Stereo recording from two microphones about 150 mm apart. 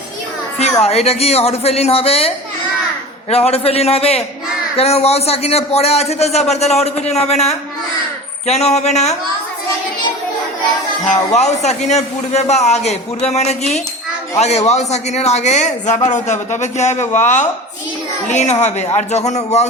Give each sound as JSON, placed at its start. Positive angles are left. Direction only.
{"t": 0.8, "sound": "a man's voice", "side_deg": 45}
{"t": 11.1, "sound": "a man's voice", "side_deg": 50}